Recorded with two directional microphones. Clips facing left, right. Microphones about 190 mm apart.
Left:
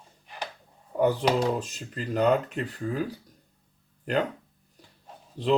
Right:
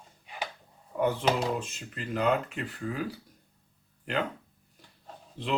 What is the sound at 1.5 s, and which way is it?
Speech, 35° left (ahead or behind).